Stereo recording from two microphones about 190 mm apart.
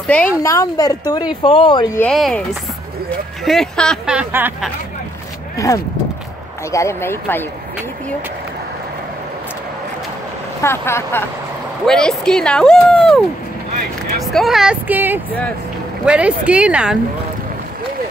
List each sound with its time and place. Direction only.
0.0 s speech: 5° left (ahead or behind); by 1.9 s 25° left (ahead or behind)
2.0 s speech: 5° left (ahead or behind)
3.4 s speech: 5° left (ahead or behind)
6.7 s speech: 15° left (ahead or behind)
10.6 s speech: 15° left (ahead or behind)
11.8 s speech: 5° left (ahead or behind)
14.2 s speech: centre (ahead or behind)